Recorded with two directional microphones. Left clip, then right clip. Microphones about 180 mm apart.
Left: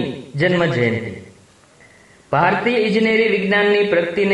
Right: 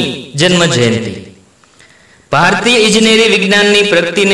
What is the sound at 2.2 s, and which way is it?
A man's voice, 25° right (ahead or behind).